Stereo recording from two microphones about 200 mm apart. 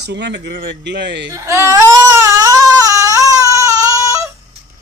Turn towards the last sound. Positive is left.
turn(degrees=-15)  # may be behind; listen again after turning